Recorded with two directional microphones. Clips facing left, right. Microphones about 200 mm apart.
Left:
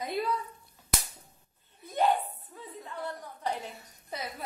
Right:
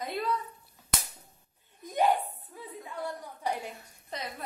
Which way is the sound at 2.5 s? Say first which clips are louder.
Right 1 dB; 10° right (ahead or behind).